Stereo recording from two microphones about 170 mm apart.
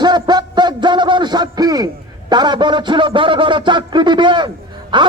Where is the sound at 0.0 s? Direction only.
25° right (ahead or behind).